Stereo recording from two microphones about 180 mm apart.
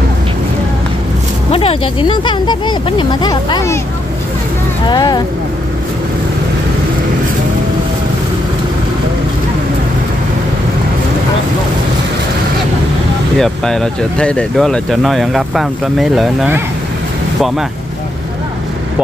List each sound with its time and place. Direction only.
1.5 s speech: 30° left (ahead or behind)
4.8 s speech: 25° left (ahead or behind)
13.4 s speech: 5° left (ahead or behind)